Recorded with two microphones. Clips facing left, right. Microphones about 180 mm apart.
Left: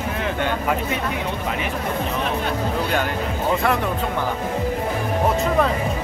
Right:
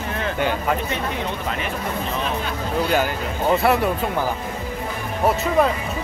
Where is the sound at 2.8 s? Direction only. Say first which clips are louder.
Right 1 dB; 5° right (ahead or behind).